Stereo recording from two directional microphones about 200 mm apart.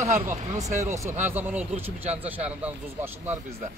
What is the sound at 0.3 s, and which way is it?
Speech, 15° right (ahead or behind).